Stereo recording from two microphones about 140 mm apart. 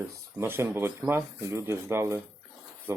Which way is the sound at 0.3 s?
15° right (ahead or behind).